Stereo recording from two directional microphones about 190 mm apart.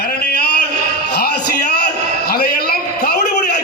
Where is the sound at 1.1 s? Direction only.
55° left (ahead or behind).